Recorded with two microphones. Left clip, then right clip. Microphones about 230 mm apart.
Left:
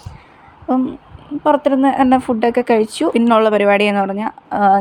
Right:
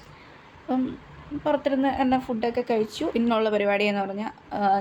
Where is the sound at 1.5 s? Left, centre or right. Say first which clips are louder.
Left 10 dB; left.